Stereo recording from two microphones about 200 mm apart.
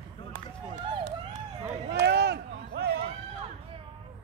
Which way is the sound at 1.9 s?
55° right (ahead or behind).